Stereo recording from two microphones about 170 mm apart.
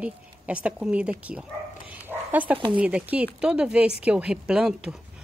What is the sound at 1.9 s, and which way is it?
Dog, 10° right (ahead or behind).